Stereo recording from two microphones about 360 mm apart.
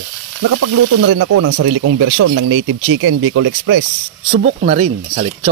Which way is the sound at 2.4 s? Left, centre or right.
Right.